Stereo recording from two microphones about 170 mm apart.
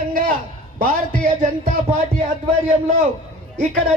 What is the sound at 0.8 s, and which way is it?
A man's voice, 50° right (ahead or behind).